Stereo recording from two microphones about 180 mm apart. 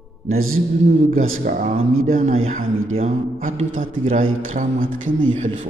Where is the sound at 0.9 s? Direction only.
40° right (ahead or behind).